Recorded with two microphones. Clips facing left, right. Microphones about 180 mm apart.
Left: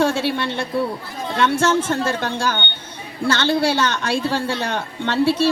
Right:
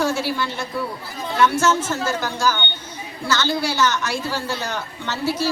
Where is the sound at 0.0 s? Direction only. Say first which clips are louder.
Left 3 dB; 25° left (ahead or behind).